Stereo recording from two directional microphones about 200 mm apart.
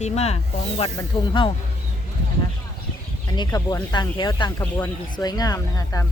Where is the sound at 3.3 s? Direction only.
20° left (ahead or behind).